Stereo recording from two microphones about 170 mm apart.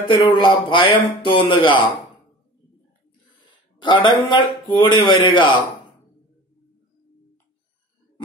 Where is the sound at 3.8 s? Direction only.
30° left (ahead or behind).